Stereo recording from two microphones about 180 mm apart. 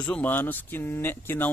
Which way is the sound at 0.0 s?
10° left (ahead or behind).